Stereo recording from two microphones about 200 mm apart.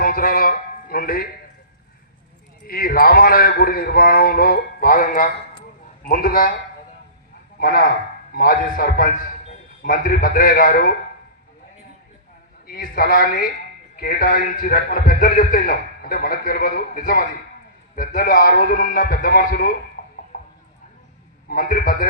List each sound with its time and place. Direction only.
0.0 s a sound: 45° left (ahead or behind)
2.6 s a man's voice: 50° left (ahead or behind)
7.6 s a man's voice: 45° left (ahead or behind)
12.6 s a man's voice: 45° left (ahead or behind)
20.0 s a sound: 40° left (ahead or behind)
20.3 s clip-clop: 45° left (ahead or behind)
21.5 s a man's voice: 45° left (ahead or behind)